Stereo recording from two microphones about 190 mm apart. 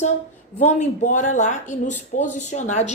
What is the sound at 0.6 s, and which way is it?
Speech, 40° left (ahead or behind).